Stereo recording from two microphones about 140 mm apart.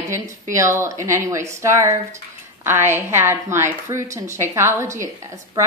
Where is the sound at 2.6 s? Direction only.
15° right (ahead or behind).